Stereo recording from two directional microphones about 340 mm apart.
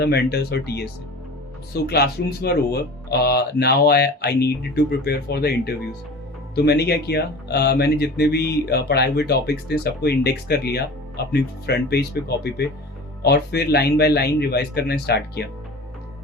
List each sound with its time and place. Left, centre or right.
0.0 s speech: left